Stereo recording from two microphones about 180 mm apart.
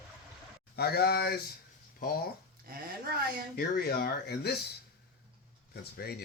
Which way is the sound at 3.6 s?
60° left (ahead or behind).